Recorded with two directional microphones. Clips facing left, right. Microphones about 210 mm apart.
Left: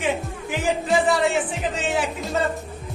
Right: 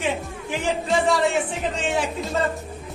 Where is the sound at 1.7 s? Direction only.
Centre (ahead or behind).